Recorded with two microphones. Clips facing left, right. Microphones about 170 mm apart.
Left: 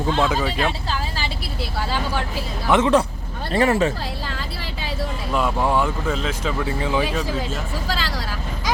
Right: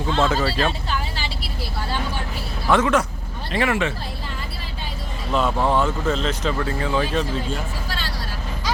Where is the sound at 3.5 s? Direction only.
40° left (ahead or behind).